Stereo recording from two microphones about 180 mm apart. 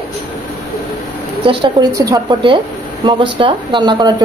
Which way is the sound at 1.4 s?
30° right (ahead or behind).